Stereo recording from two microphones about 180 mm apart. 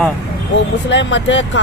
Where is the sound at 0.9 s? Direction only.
85° left.